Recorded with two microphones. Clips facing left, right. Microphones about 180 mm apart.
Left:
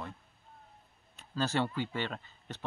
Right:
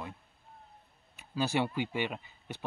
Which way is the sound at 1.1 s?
10° right (ahead or behind).